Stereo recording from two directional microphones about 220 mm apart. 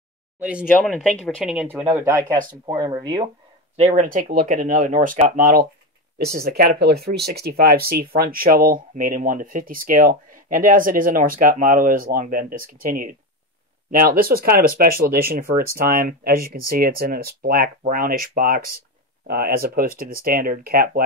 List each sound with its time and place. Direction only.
0.4 s speech: 5° right (ahead or behind)
0.7 s speech: 5° left (ahead or behind); by 3.3 s 20° right (ahead or behind)
3.7 s speech: 30° right (ahead or behind)